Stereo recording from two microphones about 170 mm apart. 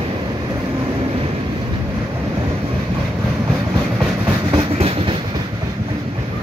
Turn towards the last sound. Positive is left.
turn(degrees=-30)  # may be behind; listen again after turning